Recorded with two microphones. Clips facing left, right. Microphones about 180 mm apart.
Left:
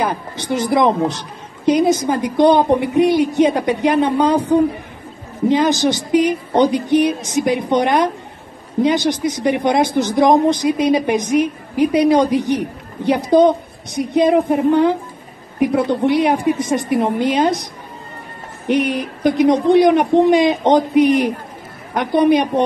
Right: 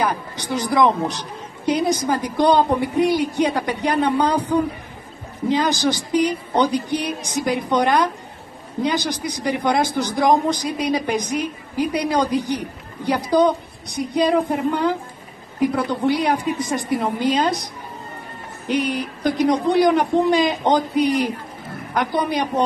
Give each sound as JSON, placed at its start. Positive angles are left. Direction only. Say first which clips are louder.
{"t": 0.0, "sound": "speech", "louder": "left 2 dB", "side_deg": 25}
{"t": 18.7, "sound": "speech", "louder": "left 4 dB", "side_deg": 20}